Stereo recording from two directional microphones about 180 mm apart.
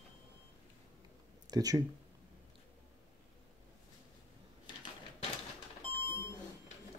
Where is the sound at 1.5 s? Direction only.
20° right (ahead or behind).